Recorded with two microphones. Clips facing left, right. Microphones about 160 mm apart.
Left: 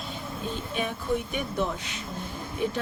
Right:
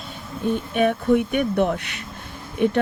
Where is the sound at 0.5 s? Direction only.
60° right (ahead or behind).